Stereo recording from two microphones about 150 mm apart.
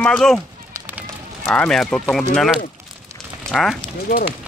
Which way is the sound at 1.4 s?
10° left (ahead or behind).